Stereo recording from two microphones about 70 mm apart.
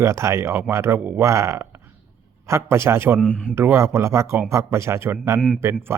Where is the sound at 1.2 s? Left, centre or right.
Right.